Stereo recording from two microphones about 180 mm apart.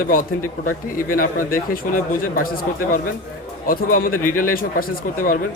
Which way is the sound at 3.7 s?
50° left (ahead or behind).